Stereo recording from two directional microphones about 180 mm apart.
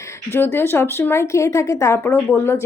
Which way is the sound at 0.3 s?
10° left (ahead or behind).